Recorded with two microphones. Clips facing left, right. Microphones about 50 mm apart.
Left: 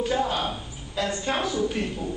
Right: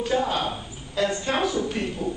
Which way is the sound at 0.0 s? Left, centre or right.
Centre.